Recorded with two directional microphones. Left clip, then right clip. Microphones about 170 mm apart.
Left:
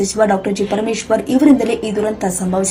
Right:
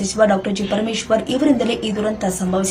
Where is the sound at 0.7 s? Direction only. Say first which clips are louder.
Right 1 dB; 20° left (ahead or behind).